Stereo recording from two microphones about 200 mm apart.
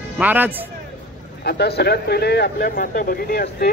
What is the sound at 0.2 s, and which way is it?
Speech, 10° right (ahead or behind).